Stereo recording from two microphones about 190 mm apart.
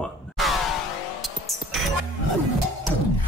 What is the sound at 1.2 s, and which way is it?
Music, centre (ahead or behind).